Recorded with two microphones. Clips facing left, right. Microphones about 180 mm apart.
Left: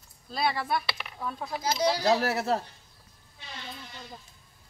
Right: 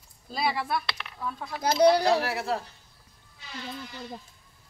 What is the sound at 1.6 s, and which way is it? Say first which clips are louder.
Speech: right 7 dB; 60° right (ahead or behind).